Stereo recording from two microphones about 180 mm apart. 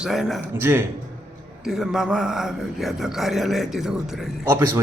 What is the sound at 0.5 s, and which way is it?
Speech, 15° right (ahead or behind).